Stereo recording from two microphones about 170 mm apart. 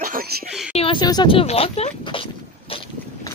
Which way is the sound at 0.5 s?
5° right (ahead or behind).